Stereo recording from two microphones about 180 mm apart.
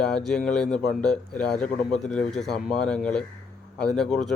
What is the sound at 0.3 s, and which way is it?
A man's voice, 5° left (ahead or behind).